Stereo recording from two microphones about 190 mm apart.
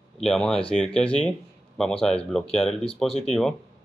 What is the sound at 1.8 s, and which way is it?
Mantra, 5° left (ahead or behind).